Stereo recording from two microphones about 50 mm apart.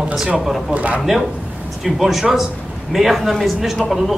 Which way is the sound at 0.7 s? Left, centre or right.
Right.